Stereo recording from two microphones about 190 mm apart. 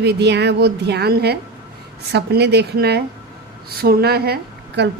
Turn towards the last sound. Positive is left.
turn(degrees=-60)  # may be behind; listen again after turning